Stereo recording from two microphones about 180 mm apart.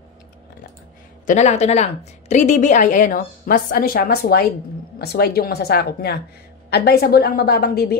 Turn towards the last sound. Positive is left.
turn(degrees=60)  # may be behind; listen again after turning